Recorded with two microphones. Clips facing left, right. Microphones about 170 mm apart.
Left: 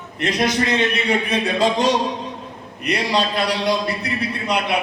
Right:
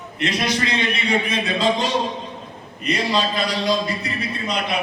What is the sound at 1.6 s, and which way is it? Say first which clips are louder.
A man's voice: left 2 dB; 70° left (ahead or behind).